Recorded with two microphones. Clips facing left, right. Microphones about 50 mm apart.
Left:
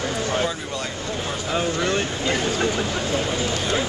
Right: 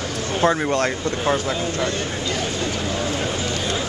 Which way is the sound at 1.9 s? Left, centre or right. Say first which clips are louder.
Left 2 dB; left.